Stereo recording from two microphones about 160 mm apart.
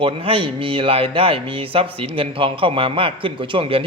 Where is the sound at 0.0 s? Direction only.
35° right (ahead or behind).